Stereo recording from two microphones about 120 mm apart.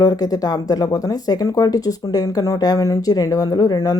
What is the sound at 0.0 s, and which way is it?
Speech, 30° left (ahead or behind).